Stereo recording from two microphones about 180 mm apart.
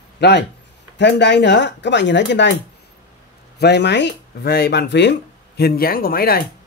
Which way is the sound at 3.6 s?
70° left (ahead or behind).